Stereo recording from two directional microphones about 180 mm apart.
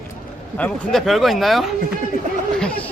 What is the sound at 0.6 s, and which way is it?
A man's voice, 5° left (ahead or behind).